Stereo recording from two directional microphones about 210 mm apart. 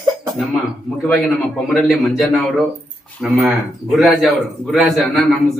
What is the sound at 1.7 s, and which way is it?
A man's voice, centre (ahead or behind).